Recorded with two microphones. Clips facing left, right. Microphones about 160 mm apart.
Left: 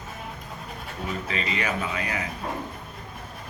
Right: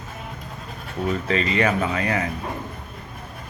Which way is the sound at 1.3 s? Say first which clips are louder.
Right 8 dB; 45° right (ahead or behind).